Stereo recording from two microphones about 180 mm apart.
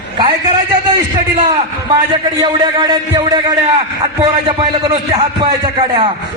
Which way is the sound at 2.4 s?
25° right (ahead or behind).